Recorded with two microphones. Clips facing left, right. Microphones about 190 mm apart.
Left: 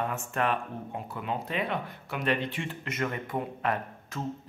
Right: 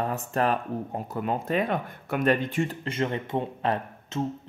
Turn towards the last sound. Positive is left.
turn(degrees=-30)  # may be behind; listen again after turning